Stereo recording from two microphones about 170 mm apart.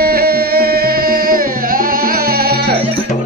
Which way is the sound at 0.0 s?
65° right (ahead or behind).